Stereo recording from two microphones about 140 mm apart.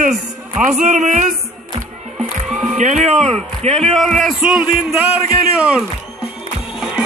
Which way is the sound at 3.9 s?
5° left (ahead or behind).